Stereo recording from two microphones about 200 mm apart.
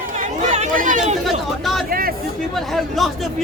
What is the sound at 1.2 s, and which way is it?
Chatter, centre (ahead or behind).